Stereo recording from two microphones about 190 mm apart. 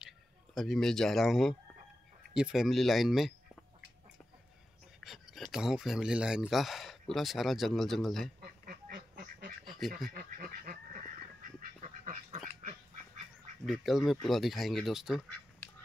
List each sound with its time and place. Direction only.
0.6 s speech: centre (ahead or behind)
5.0 s speech: centre (ahead or behind)
8.4 s duck: 50° right (ahead or behind)
9.8 s speech: centre (ahead or behind)
10.1 s goose: 50° right (ahead or behind)
11.8 s duck: 35° right (ahead or behind)
13.7 s speech: centre (ahead or behind)